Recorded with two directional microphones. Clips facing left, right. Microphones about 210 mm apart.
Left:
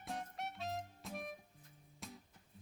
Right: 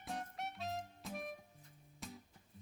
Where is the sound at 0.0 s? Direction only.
Centre (ahead or behind).